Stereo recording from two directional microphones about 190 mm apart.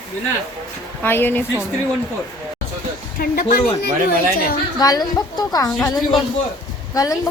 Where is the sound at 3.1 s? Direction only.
50° left (ahead or behind).